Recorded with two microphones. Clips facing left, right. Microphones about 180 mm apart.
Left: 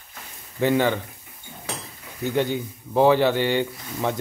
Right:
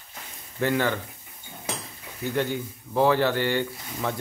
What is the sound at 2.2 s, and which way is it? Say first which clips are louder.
Speech: left 3 dB; 20° left (ahead or behind).